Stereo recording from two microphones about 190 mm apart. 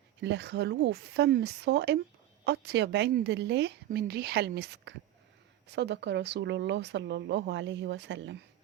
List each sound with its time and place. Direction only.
0.2 s speech: 65° right (ahead or behind)